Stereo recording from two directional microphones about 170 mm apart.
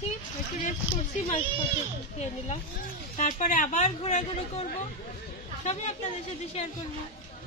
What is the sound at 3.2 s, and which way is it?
A woman's voice, 45° left (ahead or behind).